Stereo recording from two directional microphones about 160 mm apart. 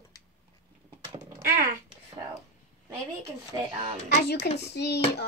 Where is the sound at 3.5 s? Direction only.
35° right (ahead or behind).